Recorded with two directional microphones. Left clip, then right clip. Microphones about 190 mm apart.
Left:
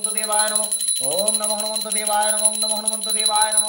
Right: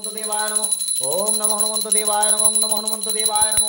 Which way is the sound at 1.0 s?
55° right (ahead or behind).